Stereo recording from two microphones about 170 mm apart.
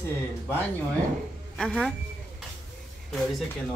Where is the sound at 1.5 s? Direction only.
5° left (ahead or behind).